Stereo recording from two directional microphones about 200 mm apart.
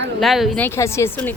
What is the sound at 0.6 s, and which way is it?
Speech, 15° left (ahead or behind).